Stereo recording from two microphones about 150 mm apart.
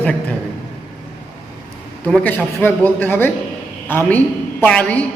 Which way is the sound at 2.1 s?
10° left (ahead or behind).